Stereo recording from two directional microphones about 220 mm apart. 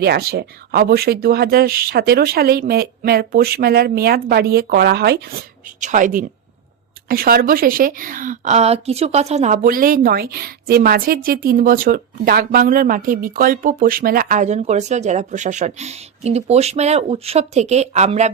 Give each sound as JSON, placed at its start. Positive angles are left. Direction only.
{"t": 0.0, "sound": "a woman's voice", "side_deg": -45}